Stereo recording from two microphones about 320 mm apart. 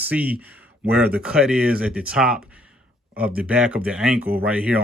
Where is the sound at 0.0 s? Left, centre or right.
Centre.